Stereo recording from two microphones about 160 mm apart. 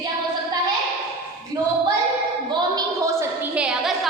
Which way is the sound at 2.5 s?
20° right (ahead or behind).